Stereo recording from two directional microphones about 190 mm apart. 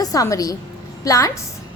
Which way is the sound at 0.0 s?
20° left (ahead or behind).